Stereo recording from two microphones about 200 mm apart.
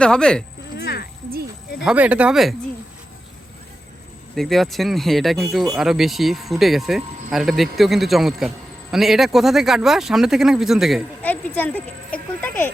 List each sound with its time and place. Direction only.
0.0 s speech: 5° left (ahead or behind)
0.8 s a sound: 50° left (ahead or behind)
1.8 s speech: 5° right (ahead or behind)
4.4 s speech: centre (ahead or behind)